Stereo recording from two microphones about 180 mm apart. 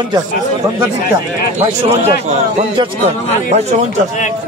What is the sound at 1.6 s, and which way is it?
Speech, 40° right (ahead or behind).